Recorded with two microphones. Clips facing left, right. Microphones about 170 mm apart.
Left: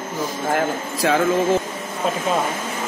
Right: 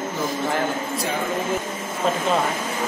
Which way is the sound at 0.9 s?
90° left.